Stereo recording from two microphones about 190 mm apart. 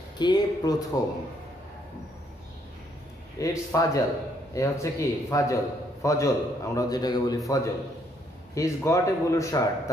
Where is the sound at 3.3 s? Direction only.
15° left (ahead or behind).